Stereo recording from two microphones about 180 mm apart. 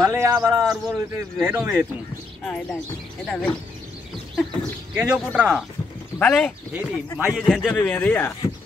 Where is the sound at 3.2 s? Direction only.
5° left (ahead or behind).